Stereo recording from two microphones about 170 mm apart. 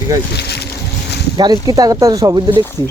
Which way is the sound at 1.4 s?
25° right (ahead or behind).